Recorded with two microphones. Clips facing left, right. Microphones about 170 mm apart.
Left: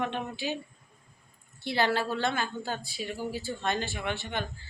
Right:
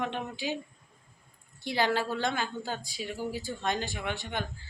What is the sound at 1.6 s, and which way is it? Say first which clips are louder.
A woman's voice: left 1 dB; 15° right (ahead or behind).